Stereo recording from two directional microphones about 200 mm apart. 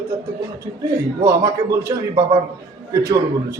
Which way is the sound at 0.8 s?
15° right (ahead or behind).